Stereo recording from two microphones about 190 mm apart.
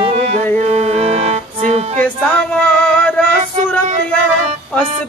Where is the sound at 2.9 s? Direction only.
5° left (ahead or behind).